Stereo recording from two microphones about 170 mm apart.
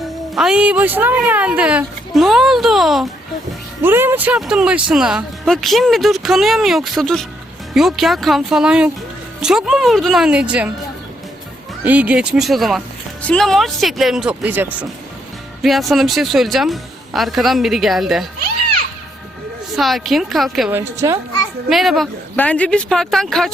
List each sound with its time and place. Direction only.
0.0 s speech: 5° right (ahead or behind)
3.8 s speech: 10° right (ahead or behind)
11.9 s speech: 10° right (ahead or behind)
15.6 s speech: centre (ahead or behind)
19.7 s speech: centre (ahead or behind)
20.7 s a woman's voice: 15° right (ahead or behind)
21.7 s speech: centre (ahead or behind)